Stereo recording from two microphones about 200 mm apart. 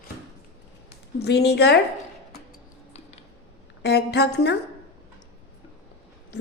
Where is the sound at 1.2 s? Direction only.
55° left (ahead or behind).